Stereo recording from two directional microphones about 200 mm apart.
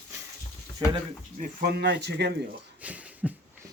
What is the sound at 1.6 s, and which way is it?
Speech, 55° right (ahead or behind).